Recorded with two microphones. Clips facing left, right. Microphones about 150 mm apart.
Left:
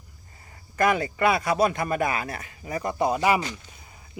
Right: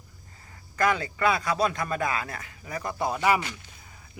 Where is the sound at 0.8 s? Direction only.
15° left (ahead or behind).